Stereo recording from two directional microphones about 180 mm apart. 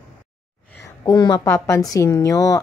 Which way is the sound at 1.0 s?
20° left (ahead or behind).